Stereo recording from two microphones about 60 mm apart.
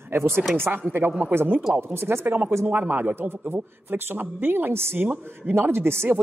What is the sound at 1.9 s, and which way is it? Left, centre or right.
Speech, right.